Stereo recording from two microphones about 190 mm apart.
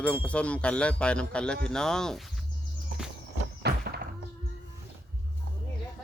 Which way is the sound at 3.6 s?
60° right (ahead or behind).